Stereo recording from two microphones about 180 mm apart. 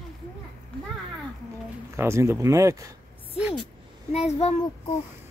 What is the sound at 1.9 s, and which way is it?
Speech, 15° right (ahead or behind).